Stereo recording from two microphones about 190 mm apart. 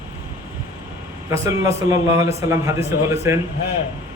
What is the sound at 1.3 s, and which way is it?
A man's voice, 15° right (ahead or behind).